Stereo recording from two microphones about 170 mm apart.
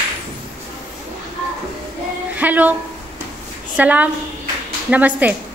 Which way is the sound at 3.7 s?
10° right (ahead or behind).